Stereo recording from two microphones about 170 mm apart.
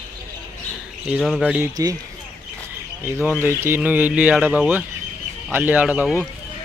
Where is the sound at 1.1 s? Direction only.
Centre (ahead or behind).